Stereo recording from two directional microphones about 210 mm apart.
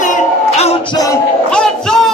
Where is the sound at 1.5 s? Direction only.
5° left (ahead or behind).